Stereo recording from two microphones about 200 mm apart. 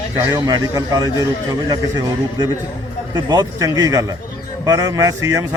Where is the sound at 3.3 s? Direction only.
20° right (ahead or behind).